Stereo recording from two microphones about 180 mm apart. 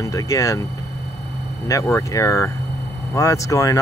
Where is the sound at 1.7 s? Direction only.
15° left (ahead or behind).